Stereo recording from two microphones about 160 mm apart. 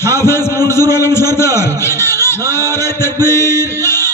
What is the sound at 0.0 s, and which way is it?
A man's voice, 15° left (ahead or behind).